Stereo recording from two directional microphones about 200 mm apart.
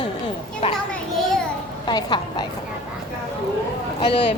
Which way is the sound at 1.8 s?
20° left (ahead or behind).